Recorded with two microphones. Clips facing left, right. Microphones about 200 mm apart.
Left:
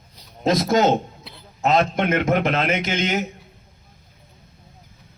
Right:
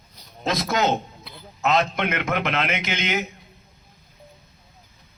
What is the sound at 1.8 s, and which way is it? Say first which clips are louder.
A man's voice: left 4 dB; 45° left (ahead or behind).